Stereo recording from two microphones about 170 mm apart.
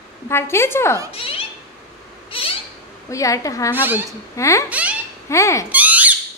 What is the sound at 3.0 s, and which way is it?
Speech, 20° left (ahead or behind).